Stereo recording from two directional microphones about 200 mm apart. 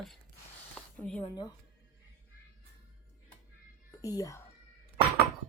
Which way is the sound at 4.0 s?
15° left (ahead or behind).